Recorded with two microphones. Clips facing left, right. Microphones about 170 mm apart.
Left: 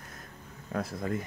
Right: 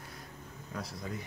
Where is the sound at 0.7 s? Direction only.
50° left (ahead or behind).